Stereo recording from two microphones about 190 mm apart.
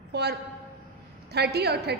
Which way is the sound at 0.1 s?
60° right (ahead or behind).